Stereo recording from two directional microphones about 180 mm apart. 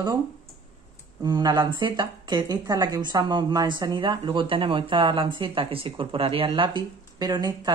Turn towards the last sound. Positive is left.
turn(degrees=-20)  # may be behind; listen again after turning